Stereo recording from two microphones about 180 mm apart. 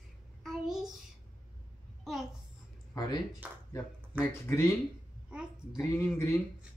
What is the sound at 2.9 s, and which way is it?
Speech, 20° left (ahead or behind).